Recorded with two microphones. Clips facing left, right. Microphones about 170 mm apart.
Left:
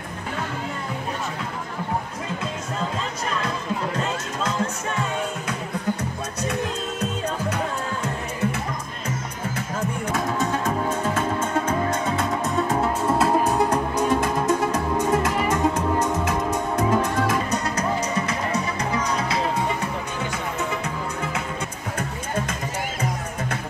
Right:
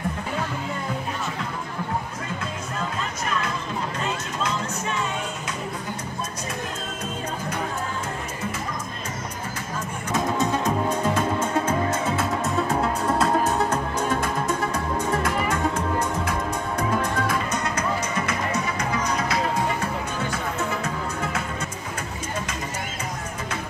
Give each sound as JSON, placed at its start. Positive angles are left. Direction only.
{"t": 7.0, "sound": "music", "side_deg": 70}
{"t": 10.1, "sound": "music", "side_deg": -15}
{"t": 17.5, "sound": "music", "side_deg": 35}